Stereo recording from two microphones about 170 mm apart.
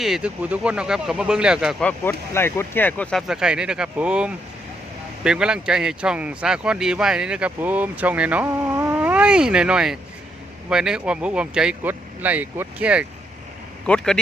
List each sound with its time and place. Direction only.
0.0 s speech: 5° right (ahead or behind)
1.8 s speech: 10° left (ahead or behind); by 13.1 s 5° right (ahead or behind)
13.8 s speech: 5° left (ahead or behind)